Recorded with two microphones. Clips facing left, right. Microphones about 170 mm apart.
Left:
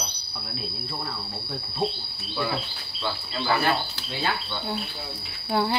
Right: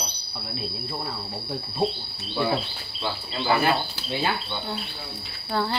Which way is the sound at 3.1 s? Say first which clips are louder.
Right 2 dB; 20° right (ahead or behind).